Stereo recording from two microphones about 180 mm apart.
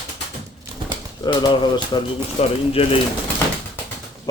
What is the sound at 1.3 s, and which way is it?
Speech, 25° left (ahead or behind).